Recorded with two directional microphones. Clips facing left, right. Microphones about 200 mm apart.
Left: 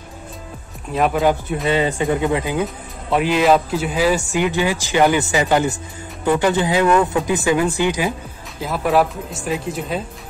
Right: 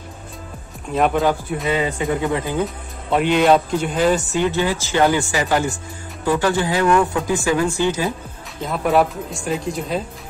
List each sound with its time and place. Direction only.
0.9 s speech: centre (ahead or behind)
1.7 s speech: 30° left (ahead or behind)
2.2 s speech: 15° left (ahead or behind)
3.1 s speech: centre (ahead or behind)
8.5 s speech: 5° left (ahead or behind)